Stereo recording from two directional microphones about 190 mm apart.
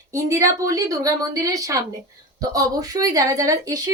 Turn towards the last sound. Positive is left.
turn(degrees=-20)  # may be behind; listen again after turning